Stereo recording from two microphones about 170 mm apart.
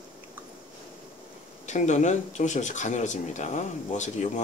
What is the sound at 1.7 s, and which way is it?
Speech, 45° left (ahead or behind).